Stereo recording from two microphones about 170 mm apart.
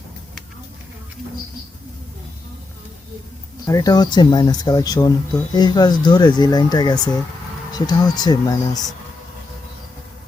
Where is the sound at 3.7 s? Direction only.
20° left (ahead or behind).